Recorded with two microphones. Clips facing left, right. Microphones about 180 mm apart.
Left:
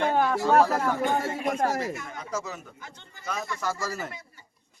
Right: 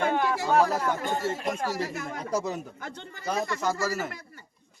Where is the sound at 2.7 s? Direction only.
65° right (ahead or behind).